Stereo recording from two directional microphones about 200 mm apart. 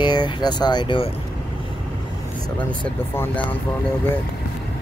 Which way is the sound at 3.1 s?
10° left (ahead or behind).